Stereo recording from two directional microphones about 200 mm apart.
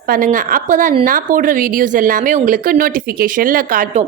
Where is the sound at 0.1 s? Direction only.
40° right (ahead or behind).